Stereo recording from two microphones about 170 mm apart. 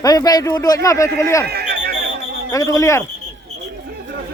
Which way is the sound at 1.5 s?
70° right (ahead or behind).